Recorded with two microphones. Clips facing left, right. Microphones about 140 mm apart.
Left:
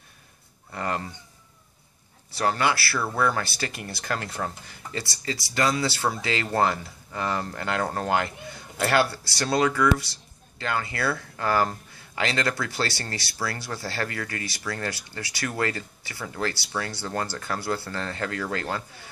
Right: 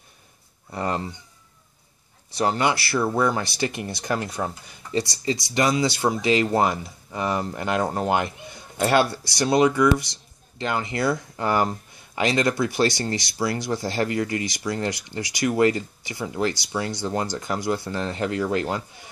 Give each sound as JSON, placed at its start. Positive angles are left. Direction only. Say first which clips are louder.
{"t": 0.7, "sound": "speech", "louder": "right 3 dB", "side_deg": -20}
{"t": 2.3, "sound": "speech", "louder": "right 2 dB", "side_deg": -20}